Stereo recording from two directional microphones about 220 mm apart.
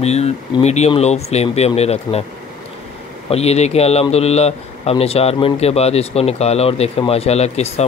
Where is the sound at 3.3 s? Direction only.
30° left (ahead or behind).